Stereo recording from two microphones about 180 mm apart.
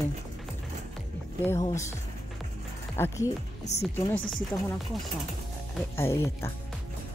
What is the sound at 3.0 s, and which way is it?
Speech, 10° left (ahead or behind).